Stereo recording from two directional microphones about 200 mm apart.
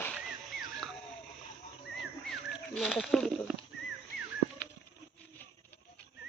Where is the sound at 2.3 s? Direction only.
Centre (ahead or behind).